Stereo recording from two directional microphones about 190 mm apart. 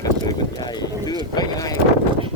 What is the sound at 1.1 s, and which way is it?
Speech, 20° left (ahead or behind).